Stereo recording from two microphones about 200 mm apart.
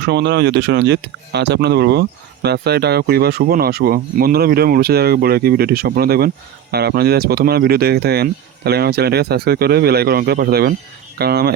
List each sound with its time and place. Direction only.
0.0 s speech: 55° right (ahead or behind)